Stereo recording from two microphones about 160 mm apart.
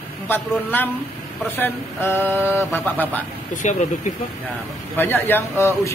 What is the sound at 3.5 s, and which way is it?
Speech, 50° left (ahead or behind).